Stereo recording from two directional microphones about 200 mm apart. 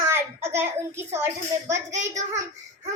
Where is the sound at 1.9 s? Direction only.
35° right (ahead or behind).